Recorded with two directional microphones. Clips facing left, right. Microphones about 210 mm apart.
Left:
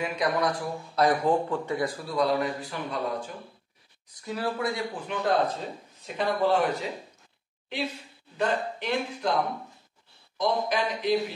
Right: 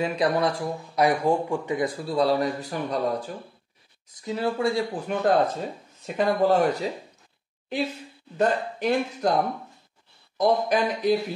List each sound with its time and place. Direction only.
0.0 s speech: 30° right (ahead or behind)
0.9 s speech: 10° right (ahead or behind)
2.0 s speech: 30° right (ahead or behind)
4.2 s speech: 25° right (ahead or behind)
5.0 s speech: 45° right (ahead or behind)
8.4 s speech: 45° right (ahead or behind)